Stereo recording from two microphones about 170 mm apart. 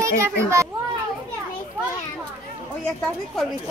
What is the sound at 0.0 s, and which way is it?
Speech, 15° right (ahead or behind).